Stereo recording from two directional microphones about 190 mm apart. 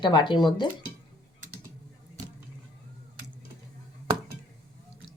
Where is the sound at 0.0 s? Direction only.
25° left (ahead or behind).